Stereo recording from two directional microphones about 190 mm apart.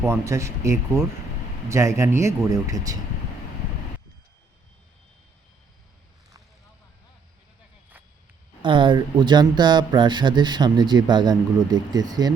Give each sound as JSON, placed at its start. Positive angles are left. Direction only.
{"t": 0.0, "sound": "speech", "side_deg": -15}
{"t": 8.6, "sound": "speech", "side_deg": -25}